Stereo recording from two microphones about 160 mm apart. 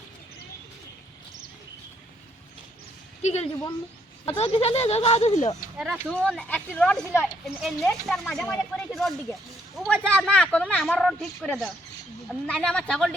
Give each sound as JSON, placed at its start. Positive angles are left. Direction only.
{"t": 3.2, "sound": "a woman's voice", "side_deg": 45}
{"t": 5.7, "sound": "speech", "side_deg": 0}